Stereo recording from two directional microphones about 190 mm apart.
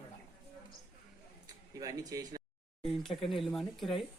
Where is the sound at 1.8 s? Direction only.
20° right (ahead or behind).